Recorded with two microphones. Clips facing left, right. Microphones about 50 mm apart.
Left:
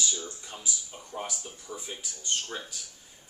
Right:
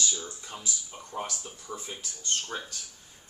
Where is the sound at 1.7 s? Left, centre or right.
Right.